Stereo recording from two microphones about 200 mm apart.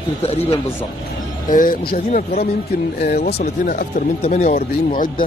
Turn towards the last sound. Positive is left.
turn(degrees=40)  # may be behind; listen again after turning